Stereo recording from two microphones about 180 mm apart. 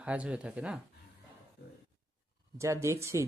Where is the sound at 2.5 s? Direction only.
15° right (ahead or behind).